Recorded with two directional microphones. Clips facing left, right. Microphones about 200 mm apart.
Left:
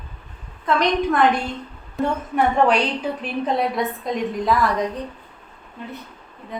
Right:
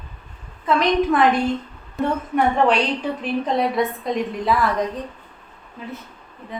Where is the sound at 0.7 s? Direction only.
Centre (ahead or behind).